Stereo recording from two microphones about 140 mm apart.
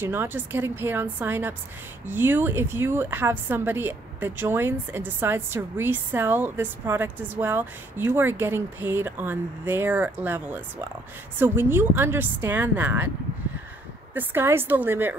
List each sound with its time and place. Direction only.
0.0 s speech: 15° right (ahead or behind)
14.1 s speech: 15° right (ahead or behind)